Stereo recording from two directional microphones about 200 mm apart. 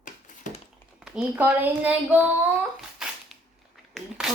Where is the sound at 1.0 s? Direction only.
Centre (ahead or behind).